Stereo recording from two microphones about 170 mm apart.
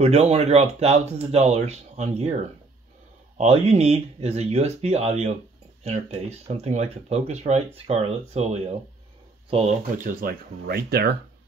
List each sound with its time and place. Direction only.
0.0 s speech: 40° right (ahead or behind)
3.3 s speech: 40° right (ahead or behind)
9.9 s speech: 55° right (ahead or behind); by 11.1 s 70° right (ahead or behind)